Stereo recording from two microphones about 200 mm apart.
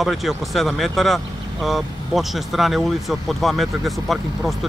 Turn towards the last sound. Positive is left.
turn(degrees=0)  # may be behind; listen again after turning